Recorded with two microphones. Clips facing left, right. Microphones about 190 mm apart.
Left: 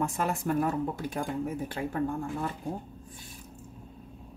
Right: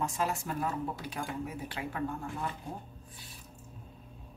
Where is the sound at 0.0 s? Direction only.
55° left (ahead or behind).